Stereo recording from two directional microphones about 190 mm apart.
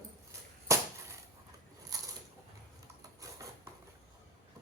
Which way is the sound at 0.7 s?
15° right (ahead or behind).